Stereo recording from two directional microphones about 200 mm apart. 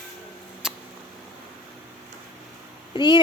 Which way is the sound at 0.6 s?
5° right (ahead or behind).